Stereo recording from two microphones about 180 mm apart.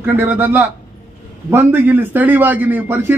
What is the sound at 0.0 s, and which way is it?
A man's voice, 10° right (ahead or behind).